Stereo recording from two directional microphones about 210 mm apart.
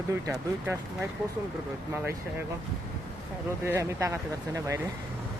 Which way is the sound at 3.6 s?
15° right (ahead or behind).